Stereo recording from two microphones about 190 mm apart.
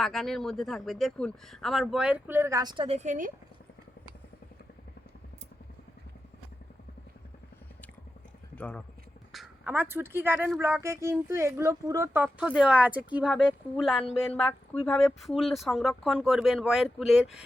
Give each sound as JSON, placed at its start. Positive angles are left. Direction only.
{"t": 0.0, "sound": "speech", "side_deg": 0}
{"t": 8.5, "sound": "speech", "side_deg": 5}
{"t": 9.3, "sound": "a sound", "side_deg": 0}
{"t": 9.7, "sound": "speech", "side_deg": -10}